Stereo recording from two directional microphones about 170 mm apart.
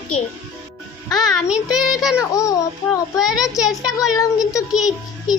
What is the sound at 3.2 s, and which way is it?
Child singing, centre (ahead or behind).